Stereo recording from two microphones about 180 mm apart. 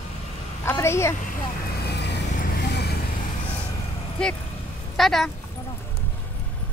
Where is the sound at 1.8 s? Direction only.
70° left (ahead or behind).